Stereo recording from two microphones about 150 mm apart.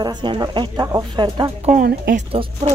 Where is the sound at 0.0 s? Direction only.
30° right (ahead or behind).